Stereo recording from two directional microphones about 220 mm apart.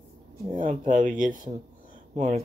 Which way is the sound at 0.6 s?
35° right (ahead or behind).